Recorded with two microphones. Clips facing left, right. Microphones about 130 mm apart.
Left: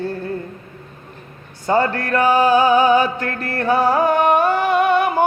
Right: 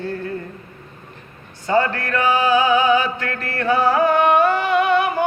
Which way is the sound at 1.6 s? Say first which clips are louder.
Left 1 dB; 40° left (ahead or behind).